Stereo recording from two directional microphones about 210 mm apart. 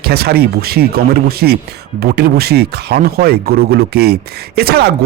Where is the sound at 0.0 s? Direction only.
50° right (ahead or behind).